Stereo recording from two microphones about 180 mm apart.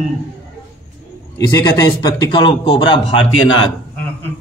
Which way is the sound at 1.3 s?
20° left (ahead or behind).